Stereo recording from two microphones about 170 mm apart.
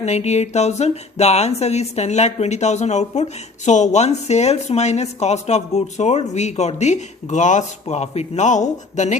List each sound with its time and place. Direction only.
0.0 s a woman's voice: 40° left (ahead or behind)